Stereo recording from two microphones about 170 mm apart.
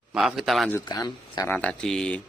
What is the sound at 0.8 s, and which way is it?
Speech, 25° left (ahead or behind).